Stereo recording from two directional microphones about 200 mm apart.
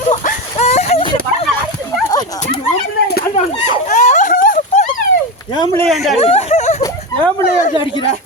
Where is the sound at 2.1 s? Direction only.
20° left (ahead or behind).